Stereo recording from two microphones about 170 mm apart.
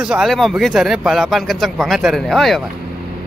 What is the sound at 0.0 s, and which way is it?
Speech, centre (ahead or behind).